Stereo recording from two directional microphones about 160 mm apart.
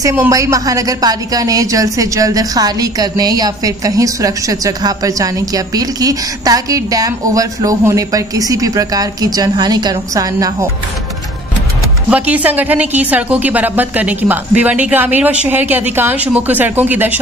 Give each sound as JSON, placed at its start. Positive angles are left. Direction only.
{"t": 0.0, "sound": "a woman's voice", "side_deg": -15}
{"t": 12.1, "sound": "a woman's voice", "side_deg": -10}